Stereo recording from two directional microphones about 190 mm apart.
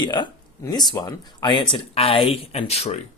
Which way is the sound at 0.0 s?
25° left (ahead or behind).